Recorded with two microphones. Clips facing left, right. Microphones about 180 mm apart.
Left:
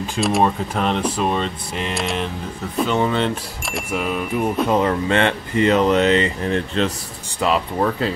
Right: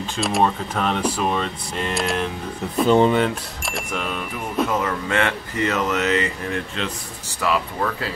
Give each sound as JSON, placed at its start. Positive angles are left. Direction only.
{"t": 0.2, "sound": "speech", "side_deg": 0}
{"t": 3.9, "sound": "speech", "side_deg": 10}
{"t": 4.6, "sound": "speech", "side_deg": 30}